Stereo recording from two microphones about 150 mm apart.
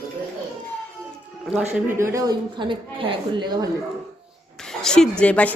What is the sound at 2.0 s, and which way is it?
Speech, 20° right (ahead or behind).